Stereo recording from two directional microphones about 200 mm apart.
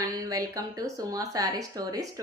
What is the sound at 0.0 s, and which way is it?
A woman's voice, 15° right (ahead or behind).